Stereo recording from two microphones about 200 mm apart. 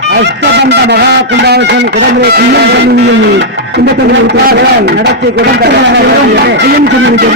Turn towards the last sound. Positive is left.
turn(degrees=-60)  # may be behind; listen again after turning